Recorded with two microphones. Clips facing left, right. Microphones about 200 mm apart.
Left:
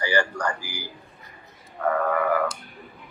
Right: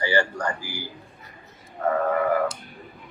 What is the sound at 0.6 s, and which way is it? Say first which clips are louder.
Speech: right 2 dB; 10° left (ahead or behind).